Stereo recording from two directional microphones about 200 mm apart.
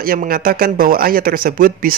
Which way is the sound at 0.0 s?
45° right (ahead or behind).